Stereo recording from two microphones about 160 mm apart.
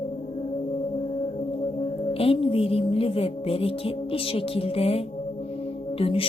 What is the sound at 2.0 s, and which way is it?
Music, 35° left (ahead or behind).